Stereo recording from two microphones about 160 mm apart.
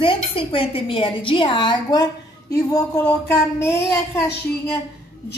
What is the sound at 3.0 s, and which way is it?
Speech, 15° left (ahead or behind).